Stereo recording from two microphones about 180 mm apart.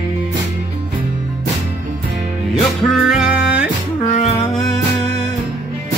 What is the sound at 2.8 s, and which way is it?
Music, centre (ahead or behind).